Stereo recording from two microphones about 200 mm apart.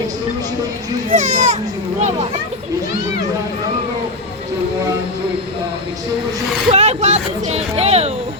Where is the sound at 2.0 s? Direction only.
35° right (ahead or behind).